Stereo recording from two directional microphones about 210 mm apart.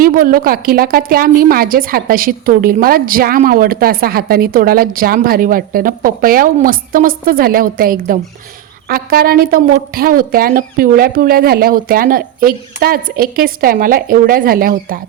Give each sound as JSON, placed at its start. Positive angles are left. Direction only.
{"t": 0.0, "sound": "a woman's voice", "side_deg": -45}